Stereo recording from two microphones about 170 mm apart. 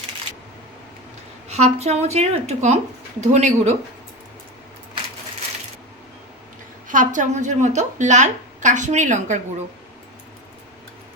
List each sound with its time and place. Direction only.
1.5 s a woman's voice: 40° right (ahead or behind)
6.8 s a woman's voice: 50° right (ahead or behind)